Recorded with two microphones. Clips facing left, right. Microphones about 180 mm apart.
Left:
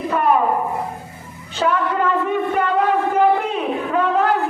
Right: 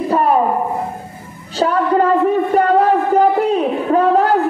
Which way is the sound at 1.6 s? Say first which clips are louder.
Right 5 dB; 35° right (ahead or behind).